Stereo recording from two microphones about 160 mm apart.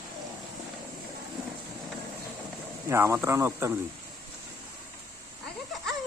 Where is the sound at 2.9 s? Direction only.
15° right (ahead or behind).